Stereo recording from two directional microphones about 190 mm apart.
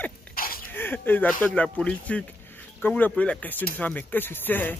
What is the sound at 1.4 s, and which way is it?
Speech, 5° left (ahead or behind).